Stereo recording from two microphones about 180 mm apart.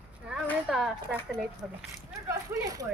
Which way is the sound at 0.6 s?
Centre (ahead or behind).